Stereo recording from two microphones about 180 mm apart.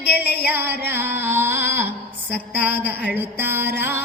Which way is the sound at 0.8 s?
10° right (ahead or behind).